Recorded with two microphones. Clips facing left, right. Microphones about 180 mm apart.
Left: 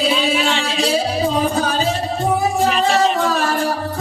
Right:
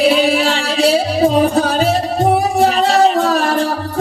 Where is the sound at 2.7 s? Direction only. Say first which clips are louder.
Right 4 dB; 35° right (ahead or behind).